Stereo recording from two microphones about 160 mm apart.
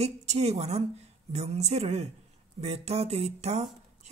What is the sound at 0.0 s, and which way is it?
Speech, 45° right (ahead or behind).